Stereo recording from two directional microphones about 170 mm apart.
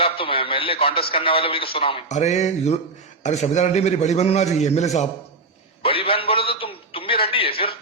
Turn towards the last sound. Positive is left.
turn(degrees=35)  # may be behind; listen again after turning